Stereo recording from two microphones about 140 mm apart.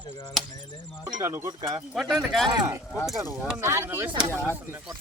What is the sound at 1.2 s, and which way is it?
Speech, 20° right (ahead or behind).